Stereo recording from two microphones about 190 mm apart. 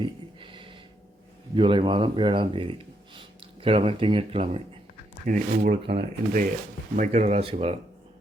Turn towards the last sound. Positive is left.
turn(degrees=-30)  # may be behind; listen again after turning